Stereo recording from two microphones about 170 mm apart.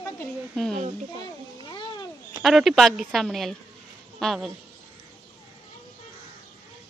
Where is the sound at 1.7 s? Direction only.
30° left (ahead or behind).